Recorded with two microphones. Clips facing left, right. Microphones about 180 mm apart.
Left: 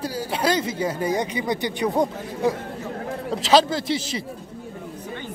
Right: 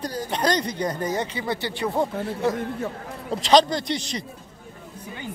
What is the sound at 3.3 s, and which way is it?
Speech, 5° left (ahead or behind).